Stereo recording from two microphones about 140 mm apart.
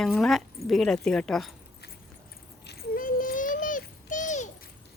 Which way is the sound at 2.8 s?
80° left.